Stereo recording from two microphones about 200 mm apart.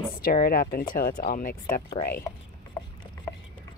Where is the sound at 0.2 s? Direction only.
45° left (ahead or behind).